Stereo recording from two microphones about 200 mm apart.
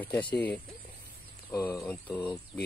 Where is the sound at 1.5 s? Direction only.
15° left (ahead or behind).